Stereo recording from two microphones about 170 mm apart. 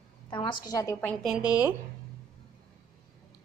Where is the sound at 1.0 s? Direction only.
Centre (ahead or behind).